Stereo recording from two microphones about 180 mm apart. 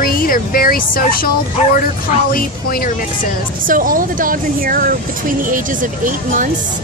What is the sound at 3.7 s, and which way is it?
Speech, 50° right (ahead or behind).